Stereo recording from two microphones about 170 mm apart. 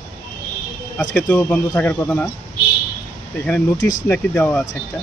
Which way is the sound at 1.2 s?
10° left (ahead or behind).